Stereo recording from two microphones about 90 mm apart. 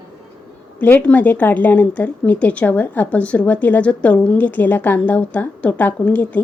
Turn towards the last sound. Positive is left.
turn(degrees=15)  # may be behind; listen again after turning